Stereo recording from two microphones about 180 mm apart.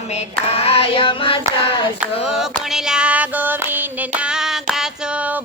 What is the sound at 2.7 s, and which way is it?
Female singing, 5° right (ahead or behind).